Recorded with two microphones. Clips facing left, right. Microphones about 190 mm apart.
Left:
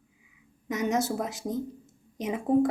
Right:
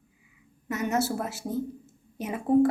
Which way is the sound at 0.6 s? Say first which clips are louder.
Even; 15° left (ahead or behind).